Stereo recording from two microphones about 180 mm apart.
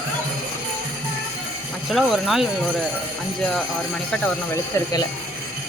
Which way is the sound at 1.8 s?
Centre (ahead or behind).